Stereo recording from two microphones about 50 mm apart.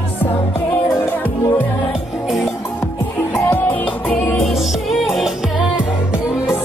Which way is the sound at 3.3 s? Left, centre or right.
Left.